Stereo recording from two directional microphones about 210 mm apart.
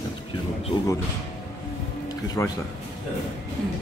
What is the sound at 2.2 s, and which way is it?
Speech, 20° left (ahead or behind).